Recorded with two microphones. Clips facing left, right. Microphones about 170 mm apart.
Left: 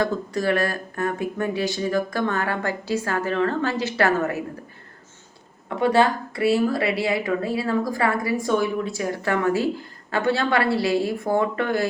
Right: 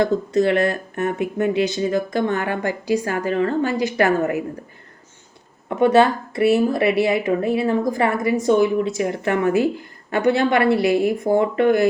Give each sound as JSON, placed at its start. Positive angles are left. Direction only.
{"t": 0.0, "sound": "a woman's voice", "side_deg": -20}
{"t": 5.6, "sound": "speech", "side_deg": -20}